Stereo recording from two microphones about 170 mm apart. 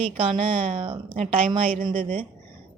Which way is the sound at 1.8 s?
55° right (ahead or behind).